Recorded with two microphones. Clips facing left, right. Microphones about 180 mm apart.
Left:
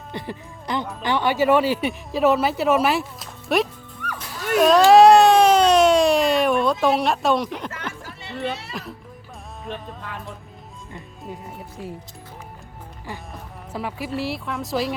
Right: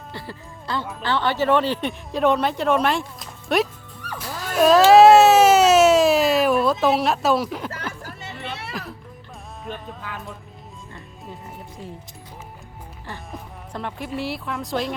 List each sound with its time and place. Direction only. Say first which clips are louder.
0.1 s speech: left 5 dB; 20° left (ahead or behind); by 3.7 s centre (ahead or behind)
4.0 s music: left 2 dB; 35° right (ahead or behind)
4.5 s a sound: even; centre (ahead or behind)
6.8 s speech: even; centre (ahead or behind)
9.6 s speech: even; centre (ahead or behind)
11.8 s speech: left 4 dB; 10° left (ahead or behind)
13.7 s speech: left 1 dB; 5° left (ahead or behind)